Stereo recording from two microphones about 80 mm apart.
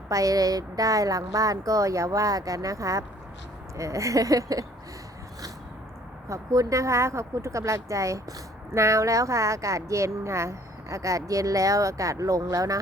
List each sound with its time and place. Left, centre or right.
0.1 s speech: right
6.2 s speech: right